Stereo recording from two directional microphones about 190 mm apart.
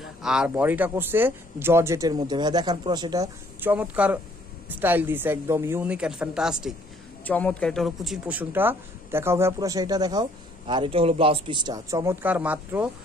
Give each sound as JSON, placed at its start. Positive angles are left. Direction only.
{"t": 0.0, "sound": "speech", "side_deg": -5}
{"t": 3.6, "sound": "speech", "side_deg": -5}
{"t": 7.2, "sound": "a man's voice", "side_deg": 5}